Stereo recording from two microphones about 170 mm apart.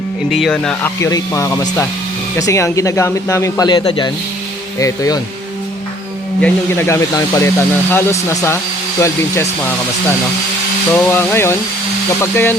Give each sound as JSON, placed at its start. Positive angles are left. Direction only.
{"t": 0.3, "sound": "speech", "side_deg": 0}
{"t": 6.4, "sound": "speech", "side_deg": 15}
{"t": 10.9, "sound": "speech", "side_deg": 10}